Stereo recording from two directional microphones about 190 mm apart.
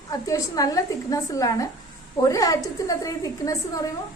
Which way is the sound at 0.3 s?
20° left (ahead or behind).